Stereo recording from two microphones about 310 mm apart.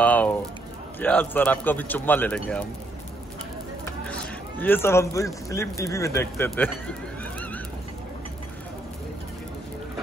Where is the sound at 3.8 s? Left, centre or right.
Centre.